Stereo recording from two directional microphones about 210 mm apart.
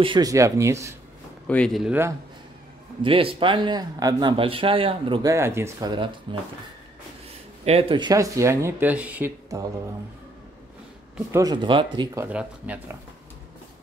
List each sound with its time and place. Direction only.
0.0 s speech: 20° right (ahead or behind)
1.5 s speech: 5° left (ahead or behind)
3.0 s speech: 25° right (ahead or behind)
7.6 s speech: 25° right (ahead or behind)
11.3 s speech: 20° right (ahead or behind)
12.3 s speech: 5° right (ahead or behind)